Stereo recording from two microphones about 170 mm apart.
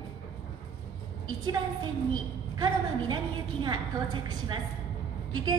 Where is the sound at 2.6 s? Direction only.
25° right (ahead or behind).